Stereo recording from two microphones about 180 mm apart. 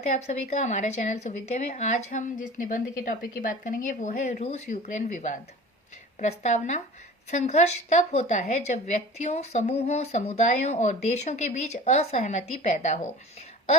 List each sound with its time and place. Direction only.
0.0 s a woman's voice: 40° left (ahead or behind)